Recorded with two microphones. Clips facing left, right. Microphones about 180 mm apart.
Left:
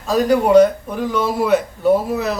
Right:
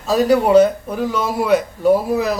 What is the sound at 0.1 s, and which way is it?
A man's voice, 5° right (ahead or behind).